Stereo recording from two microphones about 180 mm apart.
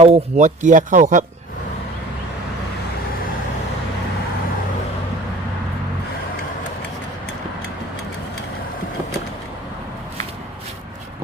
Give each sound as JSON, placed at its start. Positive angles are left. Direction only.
{"t": 0.0, "sound": "speech", "side_deg": -40}